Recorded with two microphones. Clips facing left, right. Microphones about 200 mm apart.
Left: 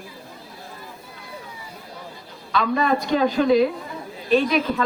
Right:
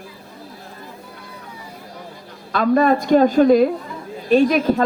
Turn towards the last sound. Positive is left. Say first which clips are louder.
# right 5 dB
turn(degrees=-45)  # may be behind; listen again after turning